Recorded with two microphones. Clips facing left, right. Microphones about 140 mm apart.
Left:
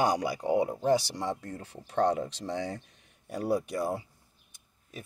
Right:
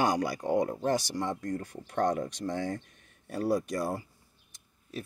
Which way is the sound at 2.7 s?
15° left (ahead or behind).